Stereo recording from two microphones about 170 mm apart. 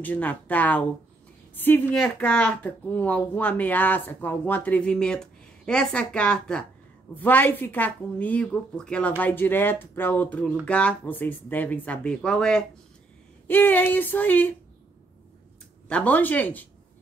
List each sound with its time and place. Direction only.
0.0 s a woman's voice: 10° left (ahead or behind)
15.9 s a woman's voice: 10° left (ahead or behind)